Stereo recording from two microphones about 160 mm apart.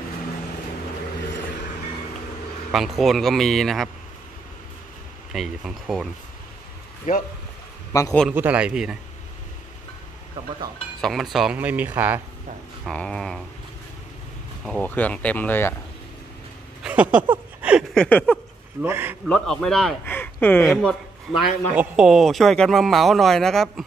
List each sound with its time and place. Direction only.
2.7 s speech: centre (ahead or behind)
5.3 s speech: centre (ahead or behind)
7.1 s speech: 55° left (ahead or behind)
7.9 s a man's voice: 20° left (ahead or behind)
8.3 s speech: 10° right (ahead or behind)
11.0 s speech: centre (ahead or behind)
12.8 s speech: 5° left (ahead or behind)
14.7 s speech: 10° left (ahead or behind)
16.8 s a sound: 10° right (ahead or behind)
17.9 s speech: 5° left (ahead or behind)
18.8 s speech: 15° right (ahead or behind)
19.2 s speech: 5° left (ahead or behind)
20.1 s speech: 10° left (ahead or behind)
21.7 s speech: 5° right (ahead or behind)